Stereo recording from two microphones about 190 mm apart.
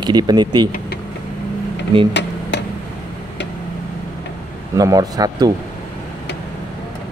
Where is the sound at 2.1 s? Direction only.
70° left (ahead or behind).